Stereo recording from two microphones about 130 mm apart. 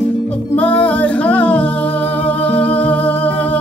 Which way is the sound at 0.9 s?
10° left (ahead or behind).